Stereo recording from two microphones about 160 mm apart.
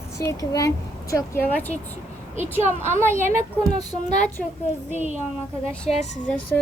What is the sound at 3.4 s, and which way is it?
Speech, 45° left (ahead or behind).